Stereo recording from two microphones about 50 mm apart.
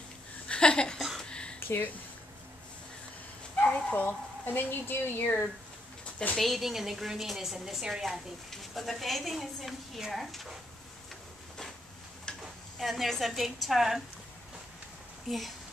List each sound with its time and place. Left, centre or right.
0.5 s a sound: centre
1.6 s a sound: left
3.5 s bow-wow: left
4.0 s speech: left
5.2 s speech: left
6.3 s a woman's voice: centre
8.5 s a woman's voice: centre
12.3 s stir: centre
12.7 s a woman's voice: centre
15.2 s a woman's voice: centre